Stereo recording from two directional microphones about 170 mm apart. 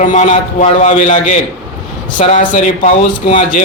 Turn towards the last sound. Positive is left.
turn(degrees=45)  # may be behind; listen again after turning